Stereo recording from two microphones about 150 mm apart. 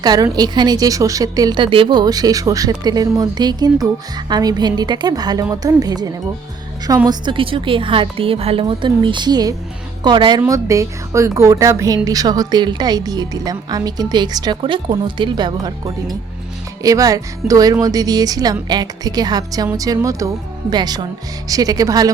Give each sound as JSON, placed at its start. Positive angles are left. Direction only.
{"t": 0.0, "sound": "a woman's voice", "side_deg": -25}
{"t": 16.8, "sound": "a woman's voice", "side_deg": -25}